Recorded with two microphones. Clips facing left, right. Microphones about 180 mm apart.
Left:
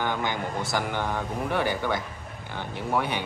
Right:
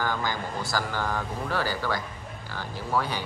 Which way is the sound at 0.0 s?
20° left (ahead or behind).